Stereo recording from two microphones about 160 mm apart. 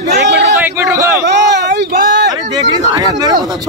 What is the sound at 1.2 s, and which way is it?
Speech, 90° right.